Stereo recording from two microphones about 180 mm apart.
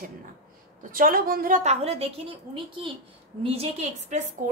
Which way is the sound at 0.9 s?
55° right (ahead or behind).